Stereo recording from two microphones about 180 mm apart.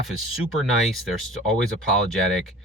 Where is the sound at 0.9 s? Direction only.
Centre (ahead or behind).